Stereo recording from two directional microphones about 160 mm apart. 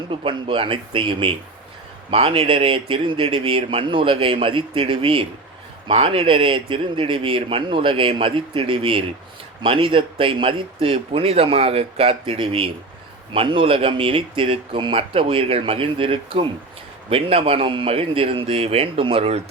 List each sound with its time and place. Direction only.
0.1 s a man's voice: 35° right (ahead or behind)